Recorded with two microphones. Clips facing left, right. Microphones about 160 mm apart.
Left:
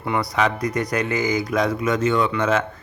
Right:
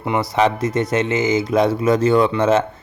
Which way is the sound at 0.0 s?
20° right (ahead or behind).